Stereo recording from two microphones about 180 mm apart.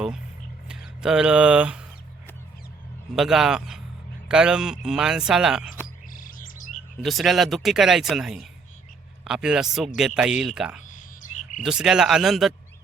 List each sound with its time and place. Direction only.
0.7 s speech: 5° right (ahead or behind)
3.2 s speech: 5° right (ahead or behind)
6.1 s bird: 50° left (ahead or behind)
7.0 s speech: centre (ahead or behind)
10.8 s frog: 45° left (ahead or behind)
11.6 s speech: 5° right (ahead or behind)